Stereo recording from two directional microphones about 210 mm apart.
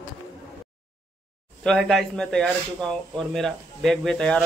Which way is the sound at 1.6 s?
Centre (ahead or behind).